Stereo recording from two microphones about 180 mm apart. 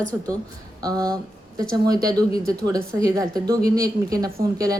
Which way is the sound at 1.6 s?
20° right (ahead or behind).